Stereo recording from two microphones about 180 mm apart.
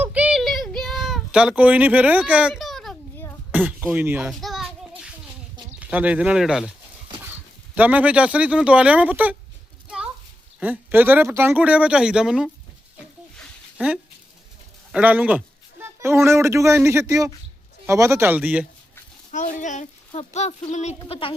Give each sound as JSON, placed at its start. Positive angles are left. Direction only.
{"t": 0.0, "sound": "a sound", "side_deg": -10}
{"t": 5.8, "sound": "speech", "side_deg": -10}
{"t": 7.8, "sound": "speech", "side_deg": -10}
{"t": 10.6, "sound": "speech", "side_deg": -10}
{"t": 13.4, "sound": "a sound", "side_deg": -5}
{"t": 14.9, "sound": "a man's voice", "side_deg": -5}
{"t": 19.3, "sound": "speech", "side_deg": 45}